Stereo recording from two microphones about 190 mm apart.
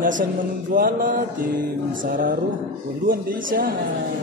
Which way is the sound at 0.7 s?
50° right (ahead or behind).